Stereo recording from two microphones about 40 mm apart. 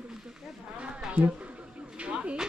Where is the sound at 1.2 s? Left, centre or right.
Right.